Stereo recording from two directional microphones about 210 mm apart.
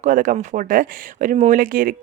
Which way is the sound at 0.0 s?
40° right (ahead or behind).